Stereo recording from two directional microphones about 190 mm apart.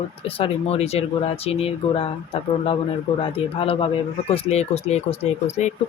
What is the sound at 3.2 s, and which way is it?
Speech, 30° left (ahead or behind).